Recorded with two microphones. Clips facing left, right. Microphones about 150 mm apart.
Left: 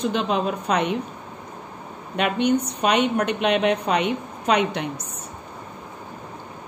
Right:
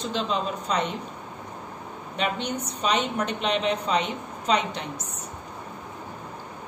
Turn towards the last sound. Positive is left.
turn(degrees=65)  # may be behind; listen again after turning